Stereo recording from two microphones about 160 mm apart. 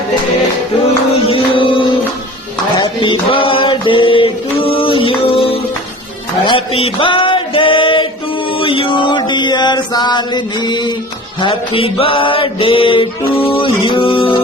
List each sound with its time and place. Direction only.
1.1 s music: 35° left (ahead or behind)
2.7 s a sound: 30° left (ahead or behind)
8.5 s chant: 35° left (ahead or behind)
11.3 s mantra: 30° left (ahead or behind)